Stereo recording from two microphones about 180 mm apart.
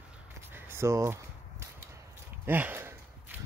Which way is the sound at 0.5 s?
15° right (ahead or behind).